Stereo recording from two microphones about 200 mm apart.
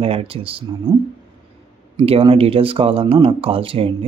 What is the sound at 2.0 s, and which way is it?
Speech, 30° right (ahead or behind).